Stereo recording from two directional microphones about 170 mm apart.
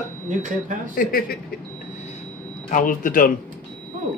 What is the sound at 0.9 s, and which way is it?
Speech, 55° left (ahead or behind).